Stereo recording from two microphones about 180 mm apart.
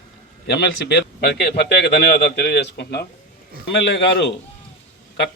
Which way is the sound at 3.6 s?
80° left.